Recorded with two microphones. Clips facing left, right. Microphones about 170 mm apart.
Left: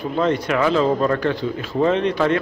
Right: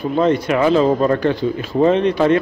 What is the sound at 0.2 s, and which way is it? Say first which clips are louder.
A man's voice: right 3 dB; 15° right (ahead or behind).